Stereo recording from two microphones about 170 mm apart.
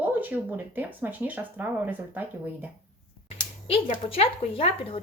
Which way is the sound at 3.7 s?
35° left (ahead or behind).